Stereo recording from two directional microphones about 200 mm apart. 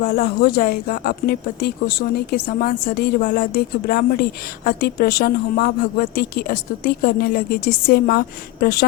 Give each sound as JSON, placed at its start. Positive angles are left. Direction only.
{"t": 0.0, "sound": "speech", "side_deg": 50}